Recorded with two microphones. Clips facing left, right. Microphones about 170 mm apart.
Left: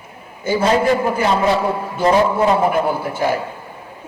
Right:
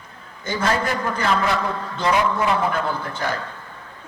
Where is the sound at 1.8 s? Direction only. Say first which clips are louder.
Left 5 dB; 15° left (ahead or behind).